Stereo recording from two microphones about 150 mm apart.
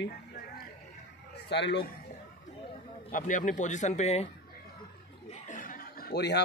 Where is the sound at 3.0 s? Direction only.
60° left (ahead or behind).